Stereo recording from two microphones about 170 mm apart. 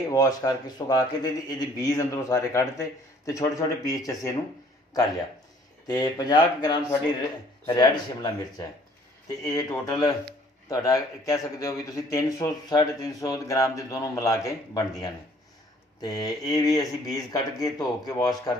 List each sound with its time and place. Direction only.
0.1 s speech: 20° left (ahead or behind)
5.9 s speech: 25° left (ahead or behind)
16.0 s speech: 20° left (ahead or behind)